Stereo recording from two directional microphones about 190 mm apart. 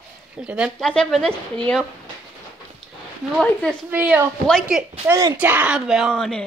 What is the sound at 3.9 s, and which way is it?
Speech, 10° right (ahead or behind).